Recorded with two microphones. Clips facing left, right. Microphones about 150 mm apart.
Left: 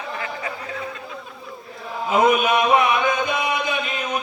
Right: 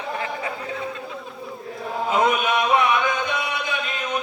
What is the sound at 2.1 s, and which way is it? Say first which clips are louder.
Music: left 4 dB; 10° left (ahead or behind).